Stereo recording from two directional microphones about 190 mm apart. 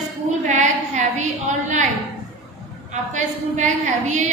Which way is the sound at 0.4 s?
40° right (ahead or behind).